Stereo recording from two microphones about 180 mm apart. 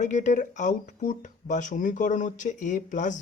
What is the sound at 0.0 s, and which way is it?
Speech, 40° left (ahead or behind).